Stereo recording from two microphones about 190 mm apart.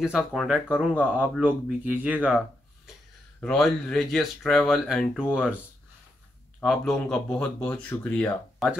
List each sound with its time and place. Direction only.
0.0 s speech: centre (ahead or behind)
6.6 s speech: centre (ahead or behind)